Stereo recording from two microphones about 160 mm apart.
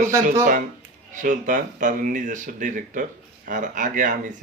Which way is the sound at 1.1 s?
55° right (ahead or behind).